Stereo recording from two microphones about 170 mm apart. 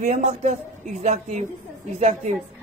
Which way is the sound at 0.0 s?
40° right (ahead or behind).